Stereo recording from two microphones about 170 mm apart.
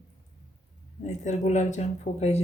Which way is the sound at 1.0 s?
40° left (ahead or behind).